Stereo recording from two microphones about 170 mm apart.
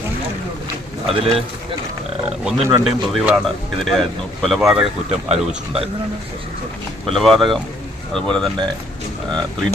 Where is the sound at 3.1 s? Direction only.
Centre (ahead or behind).